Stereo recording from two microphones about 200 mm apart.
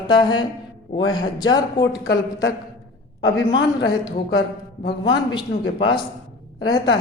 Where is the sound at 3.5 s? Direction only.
20° left (ahead or behind).